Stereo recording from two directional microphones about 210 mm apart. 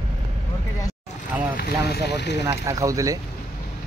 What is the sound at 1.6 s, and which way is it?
Speech, 50° left (ahead or behind).